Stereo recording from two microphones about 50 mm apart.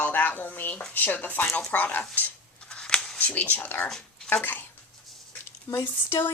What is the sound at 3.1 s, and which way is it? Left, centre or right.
Speech, left.